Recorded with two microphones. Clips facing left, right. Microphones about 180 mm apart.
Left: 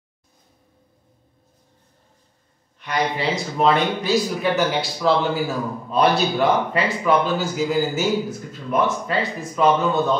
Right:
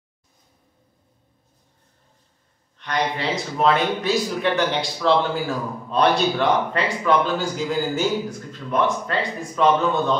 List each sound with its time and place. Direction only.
2.8 s a man's voice: 5° left (ahead or behind)